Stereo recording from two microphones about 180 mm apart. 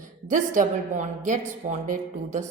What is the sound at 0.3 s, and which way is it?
A woman's voice, 45° right (ahead or behind).